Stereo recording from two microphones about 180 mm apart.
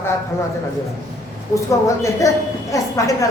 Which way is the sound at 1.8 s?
15° left (ahead or behind).